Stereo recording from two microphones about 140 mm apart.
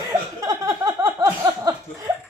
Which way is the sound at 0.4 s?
25° right (ahead or behind).